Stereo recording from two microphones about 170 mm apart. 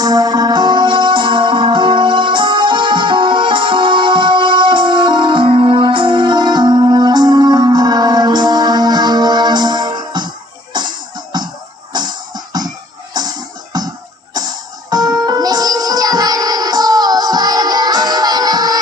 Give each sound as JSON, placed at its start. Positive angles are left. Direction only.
{"t": 0.0, "sound": "music", "side_deg": -20}
{"t": 11.9, "sound": "music", "side_deg": -25}